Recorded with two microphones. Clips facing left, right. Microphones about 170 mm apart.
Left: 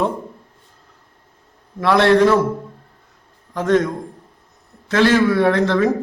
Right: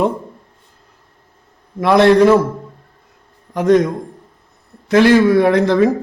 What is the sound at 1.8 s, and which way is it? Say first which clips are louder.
Speech: right 3 dB; 15° right (ahead or behind).